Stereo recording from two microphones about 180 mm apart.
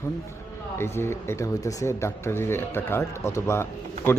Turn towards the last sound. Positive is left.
turn(degrees=15)  # may be behind; listen again after turning